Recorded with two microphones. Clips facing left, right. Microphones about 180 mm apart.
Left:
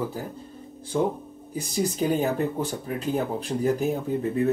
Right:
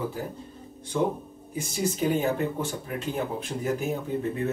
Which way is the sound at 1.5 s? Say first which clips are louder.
Left 2 dB; 40° left (ahead or behind).